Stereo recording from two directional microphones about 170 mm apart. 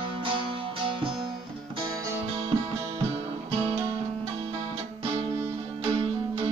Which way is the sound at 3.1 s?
35° right (ahead or behind).